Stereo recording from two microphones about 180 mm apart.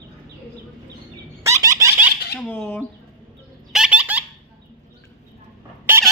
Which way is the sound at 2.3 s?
5° left (ahead or behind).